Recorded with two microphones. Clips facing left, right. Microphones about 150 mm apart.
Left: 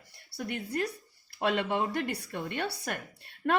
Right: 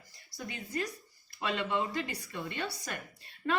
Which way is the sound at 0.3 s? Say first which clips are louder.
Left 7 dB; 65° left (ahead or behind).